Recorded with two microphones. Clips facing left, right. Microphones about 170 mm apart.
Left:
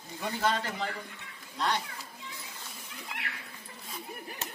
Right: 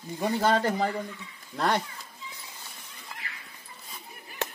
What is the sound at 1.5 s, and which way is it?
Speech, 55° right (ahead or behind).